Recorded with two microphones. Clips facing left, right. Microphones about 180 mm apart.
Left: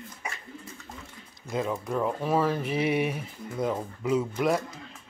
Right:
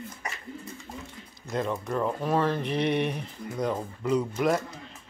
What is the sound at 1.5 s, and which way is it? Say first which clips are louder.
Speech: even; 5° left (ahead or behind).